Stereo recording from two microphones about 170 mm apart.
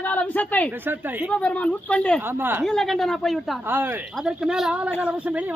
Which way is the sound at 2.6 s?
Centre (ahead or behind).